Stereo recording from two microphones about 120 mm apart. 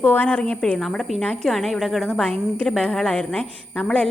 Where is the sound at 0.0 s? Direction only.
15° left (ahead or behind).